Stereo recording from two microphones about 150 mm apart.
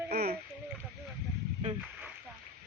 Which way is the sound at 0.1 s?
90° right.